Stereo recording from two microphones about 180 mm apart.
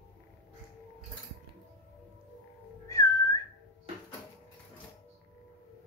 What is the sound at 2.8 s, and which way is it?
Whistling, 20° left (ahead or behind).